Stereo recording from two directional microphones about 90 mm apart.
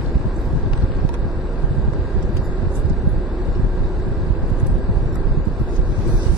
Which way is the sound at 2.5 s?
15° right (ahead or behind).